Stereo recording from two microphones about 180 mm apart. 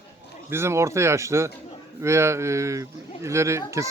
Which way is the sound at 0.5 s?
15° right (ahead or behind).